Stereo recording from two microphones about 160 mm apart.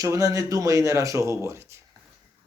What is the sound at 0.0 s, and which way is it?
Speech, 20° right (ahead or behind).